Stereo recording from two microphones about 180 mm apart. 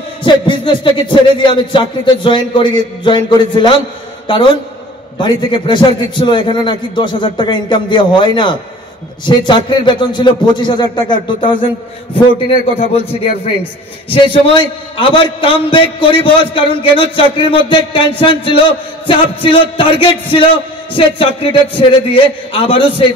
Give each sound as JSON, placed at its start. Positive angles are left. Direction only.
{"t": 0.2, "sound": "a man's voice", "side_deg": 25}